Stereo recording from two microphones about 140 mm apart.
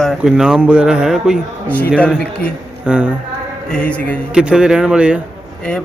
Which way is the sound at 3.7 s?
10° left (ahead or behind).